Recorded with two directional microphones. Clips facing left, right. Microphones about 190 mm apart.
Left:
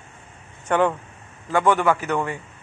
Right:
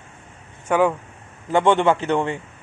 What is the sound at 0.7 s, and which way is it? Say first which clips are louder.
Speech: right 2 dB; 5° right (ahead or behind).